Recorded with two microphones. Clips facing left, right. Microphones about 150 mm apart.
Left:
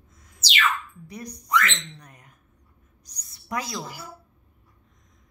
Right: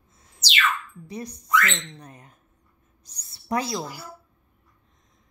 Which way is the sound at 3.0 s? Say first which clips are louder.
Right 8 dB; 25° right (ahead or behind).